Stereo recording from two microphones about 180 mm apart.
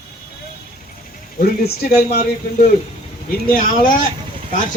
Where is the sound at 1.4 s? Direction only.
60° left (ahead or behind).